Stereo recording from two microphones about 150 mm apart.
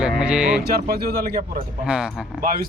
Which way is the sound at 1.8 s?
5° right (ahead or behind).